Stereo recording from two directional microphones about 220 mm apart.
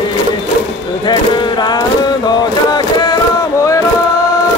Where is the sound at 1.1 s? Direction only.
20° left (ahead or behind).